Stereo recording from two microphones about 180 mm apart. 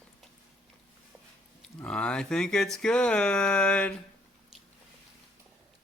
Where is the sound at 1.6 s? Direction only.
5° left (ahead or behind).